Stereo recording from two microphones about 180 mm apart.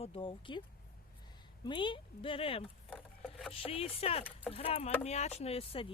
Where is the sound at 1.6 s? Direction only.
25° left (ahead or behind).